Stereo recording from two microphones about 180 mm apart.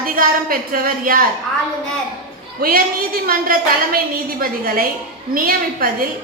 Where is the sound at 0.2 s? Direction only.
50° right (ahead or behind).